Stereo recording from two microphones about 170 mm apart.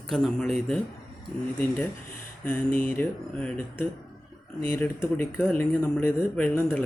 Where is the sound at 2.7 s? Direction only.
55° left (ahead or behind).